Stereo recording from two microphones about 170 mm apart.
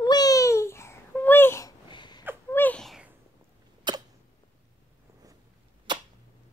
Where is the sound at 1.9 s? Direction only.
25° left (ahead or behind).